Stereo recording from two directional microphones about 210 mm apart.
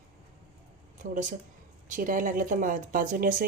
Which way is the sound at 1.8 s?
40° right (ahead or behind).